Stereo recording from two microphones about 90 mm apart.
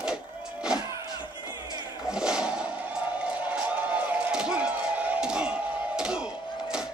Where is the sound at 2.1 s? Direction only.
10° right (ahead or behind).